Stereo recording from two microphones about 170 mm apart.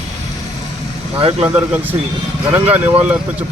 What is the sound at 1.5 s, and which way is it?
Speech, 10° right (ahead or behind).